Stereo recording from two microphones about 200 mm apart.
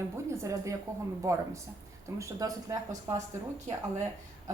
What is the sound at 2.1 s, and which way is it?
Speech, 15° right (ahead or behind).